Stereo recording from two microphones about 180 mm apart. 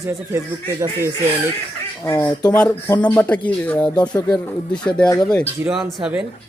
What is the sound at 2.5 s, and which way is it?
A man's voice, 5° left (ahead or behind).